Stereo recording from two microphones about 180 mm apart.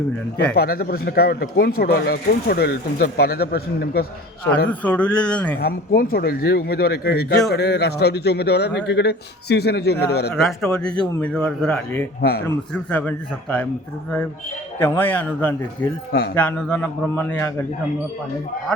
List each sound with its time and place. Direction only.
0.3 s speech: 60° left (ahead or behind)
4.7 s a man's voice: 10° left (ahead or behind)
5.5 s speech: 60° left (ahead or behind)
10.3 s a man's voice: centre (ahead or behind)
14.8 s a man's voice: 10° left (ahead or behind)